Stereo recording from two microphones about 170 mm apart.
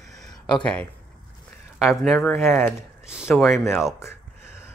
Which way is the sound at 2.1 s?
10° left (ahead or behind).